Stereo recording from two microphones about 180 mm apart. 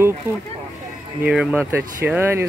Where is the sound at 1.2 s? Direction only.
5° right (ahead or behind).